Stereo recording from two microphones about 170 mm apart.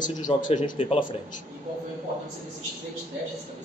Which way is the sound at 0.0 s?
50° left (ahead or behind).